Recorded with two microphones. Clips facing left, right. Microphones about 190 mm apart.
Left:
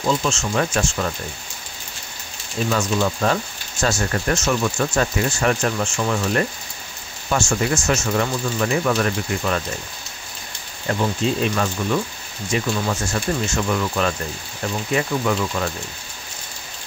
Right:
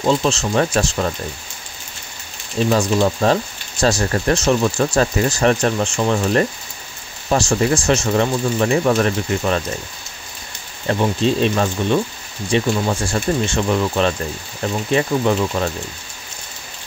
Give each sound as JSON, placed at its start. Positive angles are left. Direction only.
{"t": 0.0, "sound": "speech", "side_deg": -35}
{"t": 2.7, "sound": "speech", "side_deg": -35}
{"t": 10.9, "sound": "speech", "side_deg": -30}